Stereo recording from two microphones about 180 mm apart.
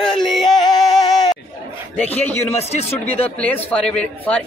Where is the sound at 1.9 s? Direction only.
10° left (ahead or behind).